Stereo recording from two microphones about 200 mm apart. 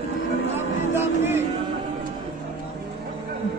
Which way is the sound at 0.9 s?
10° right (ahead or behind).